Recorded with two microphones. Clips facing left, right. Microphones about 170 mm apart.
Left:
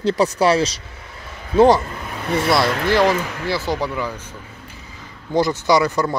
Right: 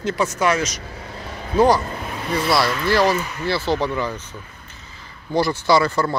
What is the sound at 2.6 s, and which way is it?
Speech, 60° left (ahead or behind).